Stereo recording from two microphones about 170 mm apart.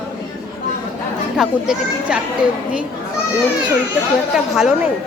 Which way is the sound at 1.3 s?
5° right (ahead or behind).